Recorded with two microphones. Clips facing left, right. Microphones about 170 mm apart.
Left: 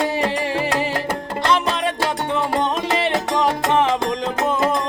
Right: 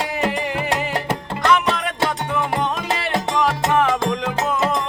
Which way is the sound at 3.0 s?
25° left (ahead or behind).